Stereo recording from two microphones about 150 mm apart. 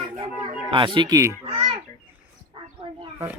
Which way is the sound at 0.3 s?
5° right (ahead or behind).